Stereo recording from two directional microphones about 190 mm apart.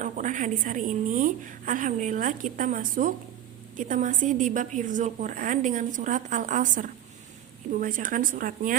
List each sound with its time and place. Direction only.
0.0 s a woman's voice: 40° right (ahead or behind)